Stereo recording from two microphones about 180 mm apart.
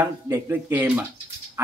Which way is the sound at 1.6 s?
15° right (ahead or behind).